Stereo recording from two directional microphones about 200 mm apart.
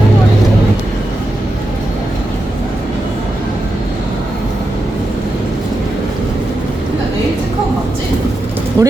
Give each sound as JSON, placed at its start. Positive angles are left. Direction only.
{"t": 8.8, "sound": "vehicle", "side_deg": -20}